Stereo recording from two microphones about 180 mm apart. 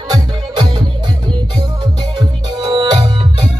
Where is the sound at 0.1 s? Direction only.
25° right (ahead or behind).